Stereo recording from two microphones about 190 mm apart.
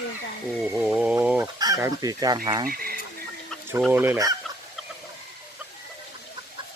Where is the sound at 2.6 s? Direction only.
50° right (ahead or behind).